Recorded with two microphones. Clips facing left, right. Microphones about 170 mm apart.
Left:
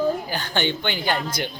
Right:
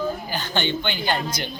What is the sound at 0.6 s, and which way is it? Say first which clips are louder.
Speech: left 1 dB; 15° left (ahead or behind).